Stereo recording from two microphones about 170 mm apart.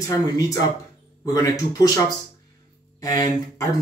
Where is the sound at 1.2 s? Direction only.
20° left (ahead or behind).